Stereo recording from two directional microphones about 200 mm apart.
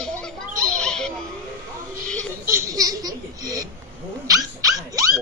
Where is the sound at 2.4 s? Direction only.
15° right (ahead or behind).